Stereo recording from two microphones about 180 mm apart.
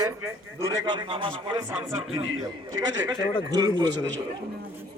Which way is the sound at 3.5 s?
20° right (ahead or behind).